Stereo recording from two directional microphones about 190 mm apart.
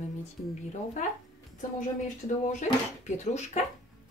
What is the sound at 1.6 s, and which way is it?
Speech, 40° left (ahead or behind).